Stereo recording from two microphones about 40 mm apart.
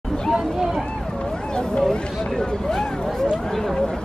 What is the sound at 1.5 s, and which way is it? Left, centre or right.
Speech, centre.